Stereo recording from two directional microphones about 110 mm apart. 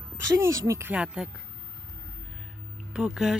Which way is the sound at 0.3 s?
25° right (ahead or behind).